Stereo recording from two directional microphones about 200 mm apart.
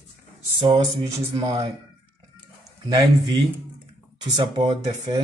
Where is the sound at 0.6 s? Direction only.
25° right (ahead or behind).